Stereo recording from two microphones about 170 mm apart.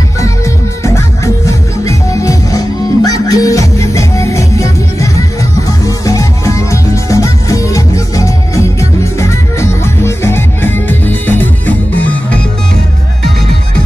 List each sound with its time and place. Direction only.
0.8 s music: 15° left (ahead or behind)